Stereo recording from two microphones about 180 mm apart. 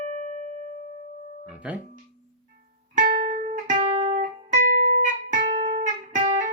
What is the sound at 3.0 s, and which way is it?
Music, 45° right (ahead or behind).